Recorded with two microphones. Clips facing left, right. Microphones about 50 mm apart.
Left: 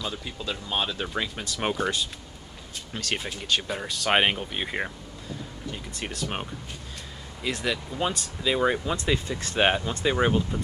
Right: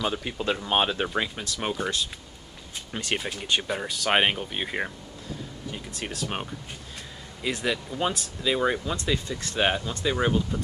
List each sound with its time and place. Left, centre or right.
0.0 s speech: right
1.0 s speech: centre
1.3 s speech: centre
2.9 s speech: centre
3.2 s speech: centre
8.8 s speech: centre